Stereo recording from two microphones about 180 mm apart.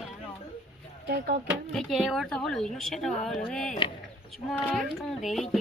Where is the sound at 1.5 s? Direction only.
Centre (ahead or behind).